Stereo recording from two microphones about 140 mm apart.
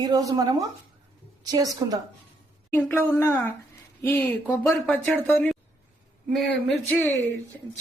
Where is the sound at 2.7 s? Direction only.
15° left (ahead or behind).